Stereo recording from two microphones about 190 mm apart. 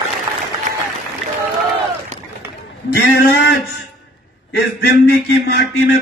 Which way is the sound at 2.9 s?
60° left (ahead or behind).